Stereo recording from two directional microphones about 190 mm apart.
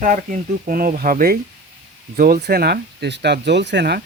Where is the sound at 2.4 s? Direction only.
60° right (ahead or behind).